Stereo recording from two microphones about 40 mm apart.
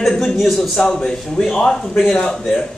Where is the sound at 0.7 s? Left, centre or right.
Centre.